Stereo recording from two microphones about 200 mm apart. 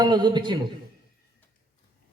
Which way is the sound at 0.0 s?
20° right (ahead or behind).